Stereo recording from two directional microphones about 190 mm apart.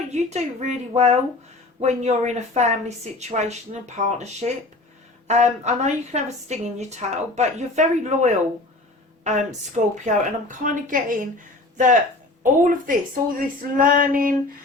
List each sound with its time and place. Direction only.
0.1 s a woman's voice: 35° right (ahead or behind)
12.4 s speech: 45° right (ahead or behind)